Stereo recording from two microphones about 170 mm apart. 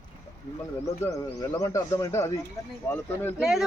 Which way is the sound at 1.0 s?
20° left (ahead or behind).